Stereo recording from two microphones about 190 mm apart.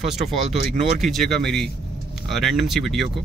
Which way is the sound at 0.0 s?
Centre (ahead or behind).